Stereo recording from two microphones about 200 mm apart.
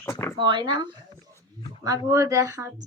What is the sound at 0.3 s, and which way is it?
Speech, 25° right (ahead or behind).